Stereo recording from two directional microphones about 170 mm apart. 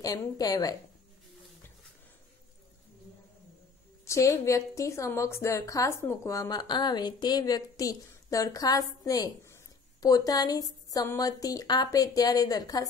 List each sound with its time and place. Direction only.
0.0 s a woman's voice: 20° left (ahead or behind)
4.0 s a woman's voice: 20° left (ahead or behind)